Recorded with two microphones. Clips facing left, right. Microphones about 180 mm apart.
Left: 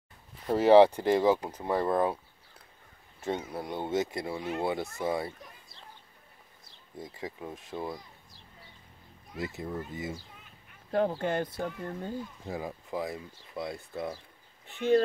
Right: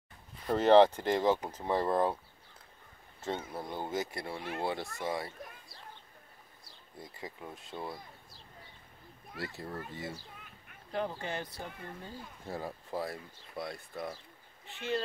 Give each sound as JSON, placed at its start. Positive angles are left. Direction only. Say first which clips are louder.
{"t": 0.5, "sound": "speech", "louder": "left 3 dB", "side_deg": 10}
{"t": 3.2, "sound": "speech", "louder": "left 4 dB", "side_deg": 15}
{"t": 7.0, "sound": "speech", "louder": "left 5 dB", "side_deg": 20}
{"t": 9.4, "sound": "speech", "louder": "left 5 dB", "side_deg": 20}
{"t": 10.9, "sound": "speech", "louder": "left 8 dB", "side_deg": 50}
{"t": 12.4, "sound": "speech", "louder": "right 1 dB", "side_deg": 15}
{"t": 14.7, "sound": "speech", "louder": "left 10 dB", "side_deg": 55}